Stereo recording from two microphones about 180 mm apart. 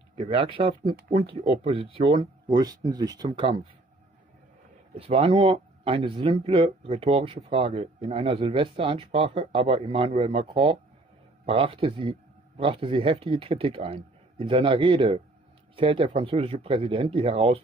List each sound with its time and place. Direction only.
0.2 s a man's voice: 30° right (ahead or behind)
4.9 s a man's voice: 30° right (ahead or behind)